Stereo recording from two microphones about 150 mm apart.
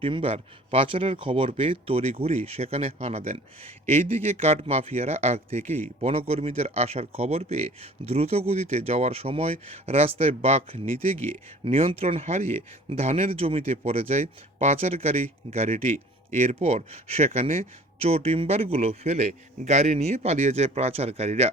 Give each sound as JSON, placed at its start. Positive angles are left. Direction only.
{"t": 0.0, "sound": "speech", "side_deg": -35}